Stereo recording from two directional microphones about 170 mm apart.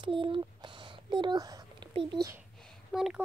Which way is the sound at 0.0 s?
30° right (ahead or behind).